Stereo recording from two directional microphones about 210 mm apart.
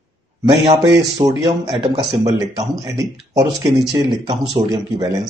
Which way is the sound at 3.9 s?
25° right (ahead or behind).